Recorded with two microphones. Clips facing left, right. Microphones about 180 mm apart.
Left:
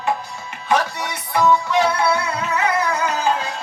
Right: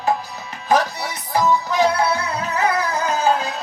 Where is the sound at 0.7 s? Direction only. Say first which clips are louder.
Right 1 dB; 35° right (ahead or behind).